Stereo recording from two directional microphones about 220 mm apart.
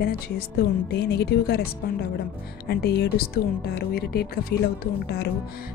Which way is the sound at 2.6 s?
45° left (ahead or behind).